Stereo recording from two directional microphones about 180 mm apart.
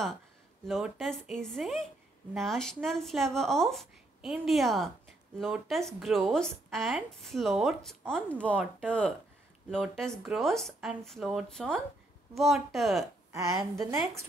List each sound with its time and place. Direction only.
0.7 s speech: centre (ahead or behind)
9.9 s speech: 5° left (ahead or behind)
13.3 s a woman's voice: 15° right (ahead or behind)